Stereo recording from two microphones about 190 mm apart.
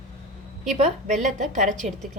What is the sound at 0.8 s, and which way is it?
A woman's voice, 40° right (ahead or behind).